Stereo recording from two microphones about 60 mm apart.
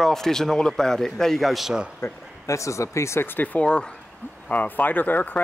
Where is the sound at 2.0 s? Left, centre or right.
Left.